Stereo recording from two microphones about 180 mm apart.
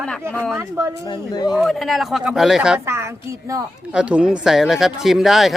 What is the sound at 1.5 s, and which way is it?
Speech, centre (ahead or behind).